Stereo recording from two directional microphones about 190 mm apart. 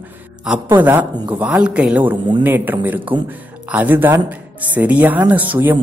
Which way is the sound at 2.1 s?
25° right (ahead or behind).